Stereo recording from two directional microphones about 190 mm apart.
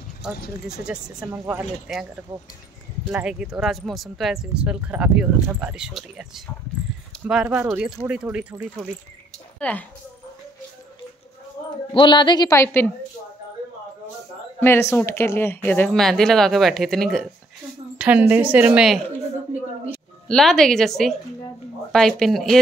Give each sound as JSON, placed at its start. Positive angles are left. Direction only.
{"t": 0.2, "sound": "speech", "side_deg": -5}
{"t": 9.6, "sound": "a woman's voice", "side_deg": 5}
{"t": 11.9, "sound": "a woman's voice", "side_deg": 25}
{"t": 14.6, "sound": "speech", "side_deg": 15}
{"t": 20.2, "sound": "speech", "side_deg": 0}